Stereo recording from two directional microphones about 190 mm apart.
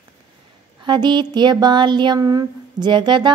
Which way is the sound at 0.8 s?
25° right (ahead or behind).